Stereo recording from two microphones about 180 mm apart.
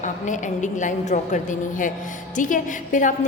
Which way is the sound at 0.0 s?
45° left (ahead or behind).